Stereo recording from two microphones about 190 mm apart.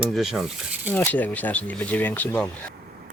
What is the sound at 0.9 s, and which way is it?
Speech, 10° left (ahead or behind).